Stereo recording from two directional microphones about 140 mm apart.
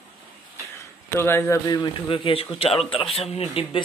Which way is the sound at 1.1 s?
20° left (ahead or behind).